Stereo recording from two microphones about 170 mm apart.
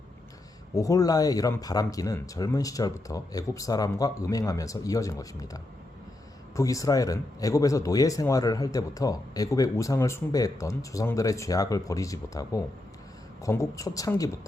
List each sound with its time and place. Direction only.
0.8 s a man's voice: 20° left (ahead or behind)
6.6 s a man's voice: 20° left (ahead or behind)